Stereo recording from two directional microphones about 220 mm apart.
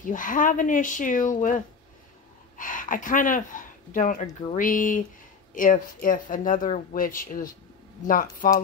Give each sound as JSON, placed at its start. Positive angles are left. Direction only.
{"t": 0.0, "sound": "speech", "side_deg": 35}